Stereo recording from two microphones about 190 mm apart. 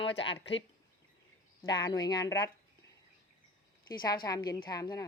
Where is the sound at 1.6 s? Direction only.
20° left (ahead or behind).